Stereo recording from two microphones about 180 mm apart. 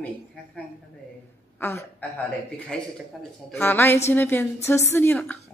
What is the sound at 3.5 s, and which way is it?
A man's voice, 10° left (ahead or behind).